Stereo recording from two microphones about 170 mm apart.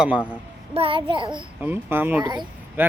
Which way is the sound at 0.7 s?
35° right (ahead or behind).